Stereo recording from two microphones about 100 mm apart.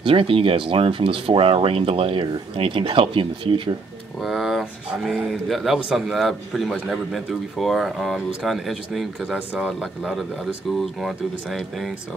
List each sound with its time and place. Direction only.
0.0 s speech: 65° right (ahead or behind)
4.2 s speech: centre (ahead or behind)